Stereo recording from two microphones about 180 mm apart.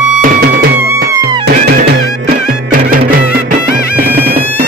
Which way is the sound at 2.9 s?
55° right (ahead or behind).